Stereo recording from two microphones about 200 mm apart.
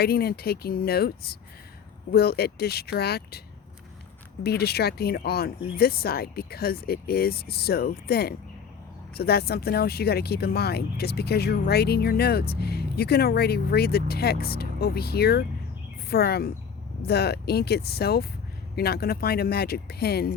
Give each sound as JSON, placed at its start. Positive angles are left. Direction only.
{"t": 0.0, "sound": "speech", "side_deg": 50}
{"t": 4.4, "sound": "speech", "side_deg": 55}